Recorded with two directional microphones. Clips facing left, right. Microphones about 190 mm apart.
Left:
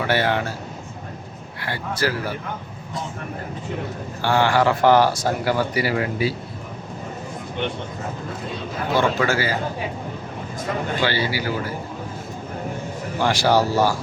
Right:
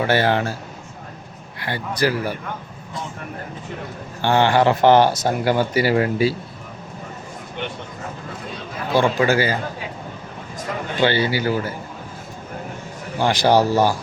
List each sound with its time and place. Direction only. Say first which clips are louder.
0.1 s speech: right 1 dB; 35° right (ahead or behind)
1.6 s speech: right 3 dB; 20° right (ahead or behind)
4.2 s a man's voice: right 2 dB; 25° right (ahead or behind)
9.0 s speech: right 4 dB; 15° right (ahead or behind)
11.0 s a man's voice: right 7 dB; 25° right (ahead or behind)
13.1 s speech: right 2 dB; 20° right (ahead or behind)